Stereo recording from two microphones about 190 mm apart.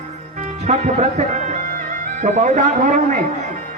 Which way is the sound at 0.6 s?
40° right (ahead or behind).